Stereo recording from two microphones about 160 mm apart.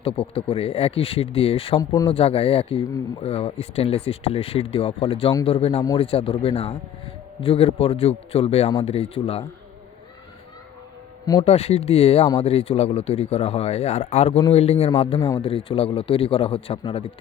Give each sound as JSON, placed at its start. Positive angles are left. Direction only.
{"t": 0.0, "sound": "speech", "side_deg": 35}
{"t": 1.8, "sound": "speech", "side_deg": 20}
{"t": 2.0, "sound": "speech", "side_deg": 35}
{"t": 11.4, "sound": "speech", "side_deg": 40}